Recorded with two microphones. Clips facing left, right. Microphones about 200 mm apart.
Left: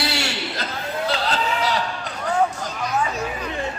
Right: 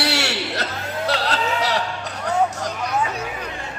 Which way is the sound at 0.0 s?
70° right (ahead or behind).